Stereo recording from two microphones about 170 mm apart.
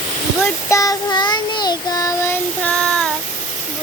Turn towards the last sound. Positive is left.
turn(degrees=5)  # may be behind; listen again after turning